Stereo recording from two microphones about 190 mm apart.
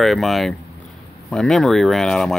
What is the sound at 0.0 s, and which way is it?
Speech, centre (ahead or behind).